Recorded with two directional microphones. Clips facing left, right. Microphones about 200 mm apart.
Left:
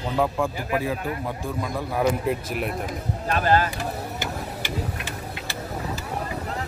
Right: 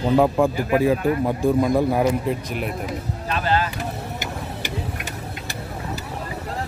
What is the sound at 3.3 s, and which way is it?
Speech, 45° left (ahead or behind).